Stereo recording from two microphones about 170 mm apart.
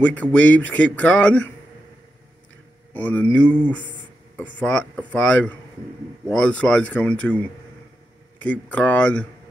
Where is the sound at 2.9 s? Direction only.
10° left (ahead or behind).